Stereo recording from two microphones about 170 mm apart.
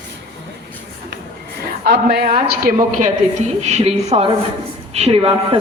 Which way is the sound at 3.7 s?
40° right (ahead or behind).